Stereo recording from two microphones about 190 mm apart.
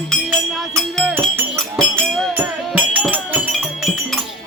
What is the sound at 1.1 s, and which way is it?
Music, 10° right (ahead or behind).